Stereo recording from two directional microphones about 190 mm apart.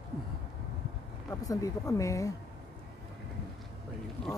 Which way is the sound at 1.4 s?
20° left (ahead or behind).